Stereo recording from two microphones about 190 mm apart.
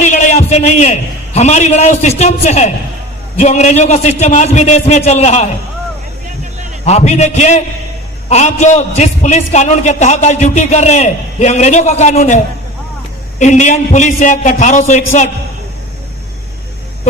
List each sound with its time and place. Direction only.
0.0 s a man's voice: 40° left (ahead or behind)
6.8 s a man's voice: 35° left (ahead or behind)
13.4 s a man's voice: 40° left (ahead or behind)